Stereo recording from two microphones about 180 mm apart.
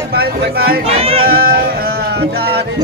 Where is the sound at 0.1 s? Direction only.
60° right (ahead or behind).